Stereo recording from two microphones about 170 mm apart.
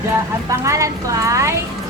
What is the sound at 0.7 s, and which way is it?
Speech, 20° right (ahead or behind).